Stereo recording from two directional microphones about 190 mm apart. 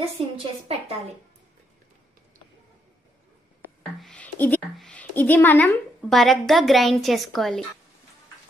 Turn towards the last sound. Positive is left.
turn(degrees=0)  # may be behind; listen again after turning